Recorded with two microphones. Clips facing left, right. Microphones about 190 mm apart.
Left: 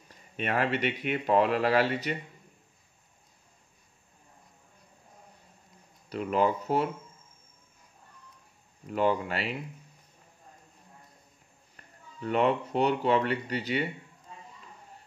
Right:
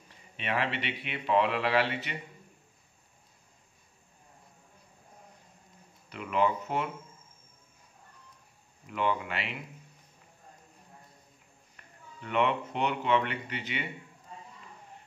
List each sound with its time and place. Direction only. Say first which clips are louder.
0.1 s speech: left 3 dB; 45° left (ahead or behind)
6.0 s speech: left 2 dB; 40° left (ahead or behind)
8.8 s speech: left 4 dB; 40° left (ahead or behind)
11.7 s speech: even; 35° left (ahead or behind)